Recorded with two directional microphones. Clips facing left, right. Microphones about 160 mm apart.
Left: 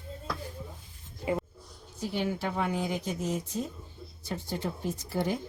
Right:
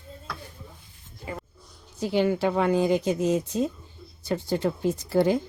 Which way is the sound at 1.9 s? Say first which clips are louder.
Right 8 dB; 85° right.